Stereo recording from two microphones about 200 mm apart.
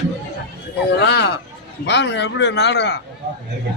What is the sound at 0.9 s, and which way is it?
Speech, 60° left (ahead or behind).